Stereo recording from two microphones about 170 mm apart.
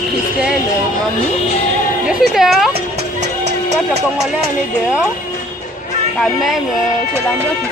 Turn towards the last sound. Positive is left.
turn(degrees=0)  # may be behind; listen again after turning